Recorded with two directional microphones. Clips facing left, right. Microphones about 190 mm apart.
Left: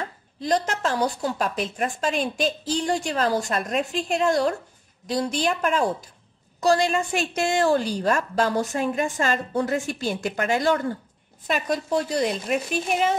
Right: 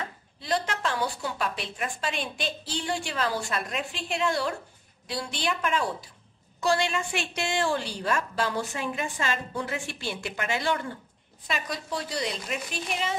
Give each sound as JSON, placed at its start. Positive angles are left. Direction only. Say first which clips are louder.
{"t": 0.4, "sound": "a woman's voice", "louder": "left 5 dB", "side_deg": 40}